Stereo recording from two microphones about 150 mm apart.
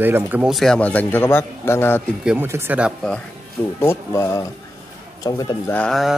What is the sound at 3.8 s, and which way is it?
A man's voice, 20° left (ahead or behind).